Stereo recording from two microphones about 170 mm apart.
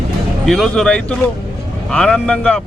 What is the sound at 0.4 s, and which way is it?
Speech, centre (ahead or behind).